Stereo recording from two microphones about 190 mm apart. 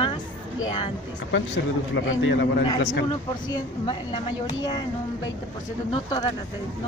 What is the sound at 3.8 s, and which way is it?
Speech, 30° left (ahead or behind).